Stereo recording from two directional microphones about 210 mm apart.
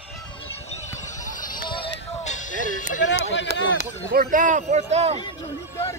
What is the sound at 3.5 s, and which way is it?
Speech, 50° right (ahead or behind).